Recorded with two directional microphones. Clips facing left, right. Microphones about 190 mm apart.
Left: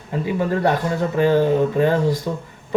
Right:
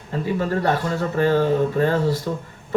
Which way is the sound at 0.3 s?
20° left (ahead or behind).